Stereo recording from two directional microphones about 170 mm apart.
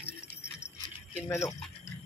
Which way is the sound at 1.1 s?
15° left (ahead or behind).